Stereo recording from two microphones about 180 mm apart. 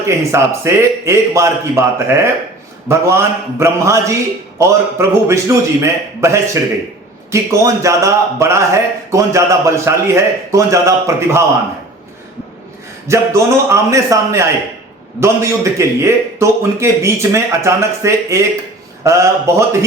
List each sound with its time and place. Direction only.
0.3 s a man's voice: 15° right (ahead or behind)
13.1 s a man's voice: 15° right (ahead or behind)